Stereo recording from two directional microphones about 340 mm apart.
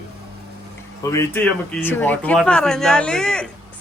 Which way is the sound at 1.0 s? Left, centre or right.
Centre.